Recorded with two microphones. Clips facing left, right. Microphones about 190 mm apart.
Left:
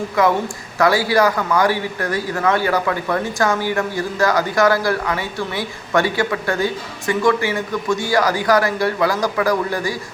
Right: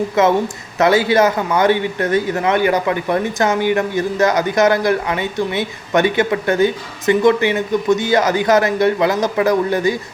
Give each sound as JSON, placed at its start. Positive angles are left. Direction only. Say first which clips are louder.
{"t": 0.2, "sound": "speech", "louder": "right 2 dB", "side_deg": -20}